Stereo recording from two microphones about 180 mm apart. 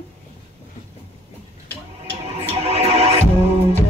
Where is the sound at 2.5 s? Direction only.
35° right (ahead or behind).